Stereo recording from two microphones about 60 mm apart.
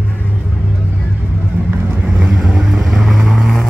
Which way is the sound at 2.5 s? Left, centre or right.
Centre.